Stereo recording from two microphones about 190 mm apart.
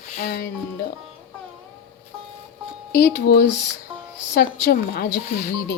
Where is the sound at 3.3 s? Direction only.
55° left (ahead or behind).